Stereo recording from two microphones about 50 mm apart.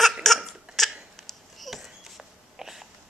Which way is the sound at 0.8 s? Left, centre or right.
Centre.